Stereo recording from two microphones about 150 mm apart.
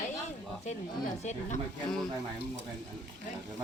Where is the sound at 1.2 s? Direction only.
50° left (ahead or behind).